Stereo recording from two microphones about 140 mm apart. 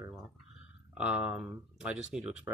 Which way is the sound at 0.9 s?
10° right (ahead or behind).